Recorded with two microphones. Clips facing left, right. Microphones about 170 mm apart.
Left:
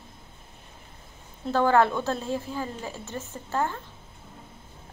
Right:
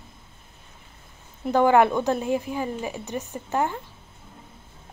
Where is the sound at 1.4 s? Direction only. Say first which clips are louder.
Right 3 dB; 15° right (ahead or behind).